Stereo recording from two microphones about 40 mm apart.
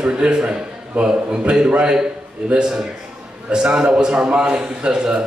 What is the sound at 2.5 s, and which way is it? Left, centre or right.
A man's voice, right.